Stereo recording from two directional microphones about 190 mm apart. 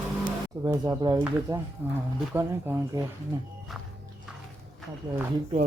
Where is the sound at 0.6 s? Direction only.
20° right (ahead or behind).